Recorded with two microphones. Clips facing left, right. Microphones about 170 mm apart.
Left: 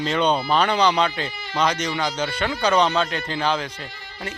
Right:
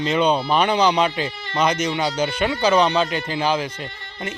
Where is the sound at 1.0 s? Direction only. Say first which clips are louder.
Right 2 dB; 15° right (ahead or behind).